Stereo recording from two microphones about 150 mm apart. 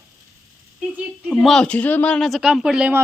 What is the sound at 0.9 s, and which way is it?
Speech, 5° right (ahead or behind).